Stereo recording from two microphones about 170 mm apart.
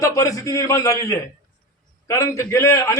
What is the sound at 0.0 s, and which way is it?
A man's voice, 20° left (ahead or behind).